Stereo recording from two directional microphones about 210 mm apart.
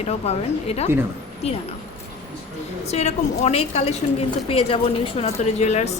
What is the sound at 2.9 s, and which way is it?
A woman's voice, 30° left (ahead or behind).